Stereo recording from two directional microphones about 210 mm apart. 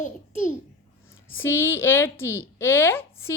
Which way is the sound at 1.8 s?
10° left (ahead or behind).